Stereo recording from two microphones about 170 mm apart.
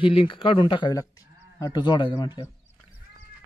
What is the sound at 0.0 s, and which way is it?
Speech, 30° left (ahead or behind).